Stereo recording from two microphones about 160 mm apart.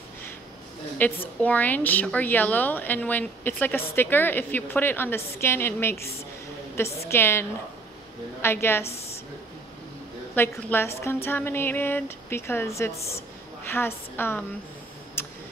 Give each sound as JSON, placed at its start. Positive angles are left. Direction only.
{"t": 1.0, "sound": "speech", "side_deg": 10}
{"t": 7.1, "sound": "speech", "side_deg": 15}
{"t": 8.8, "sound": "a woman's voice", "side_deg": 40}
{"t": 10.3, "sound": "speech", "side_deg": 15}
{"t": 15.2, "sound": "tick", "side_deg": 15}